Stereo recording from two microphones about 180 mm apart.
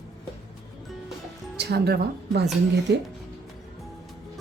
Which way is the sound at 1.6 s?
65° right (ahead or behind).